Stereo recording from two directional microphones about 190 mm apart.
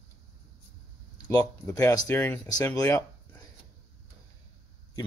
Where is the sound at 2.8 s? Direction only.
15° left (ahead or behind).